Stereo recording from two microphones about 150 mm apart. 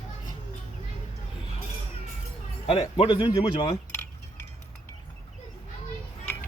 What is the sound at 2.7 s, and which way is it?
Speech, 35° left (ahead or behind).